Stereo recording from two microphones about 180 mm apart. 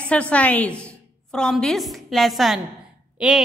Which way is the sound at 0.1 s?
5° left (ahead or behind).